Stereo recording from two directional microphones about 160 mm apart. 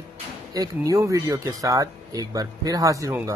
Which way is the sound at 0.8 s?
20° right (ahead or behind).